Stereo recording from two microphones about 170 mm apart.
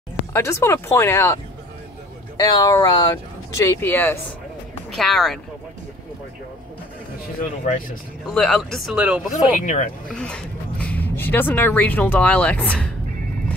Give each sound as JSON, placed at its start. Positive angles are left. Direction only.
{"t": 0.3, "sound": "speech", "side_deg": 15}
{"t": 7.6, "sound": "speech", "side_deg": 50}
{"t": 8.3, "sound": "speech", "side_deg": 5}
{"t": 9.3, "sound": "speech", "side_deg": 50}
{"t": 10.0, "sound": "speech", "side_deg": 5}